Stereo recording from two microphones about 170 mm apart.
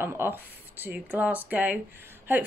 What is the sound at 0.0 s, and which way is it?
A woman's voice, 15° right (ahead or behind).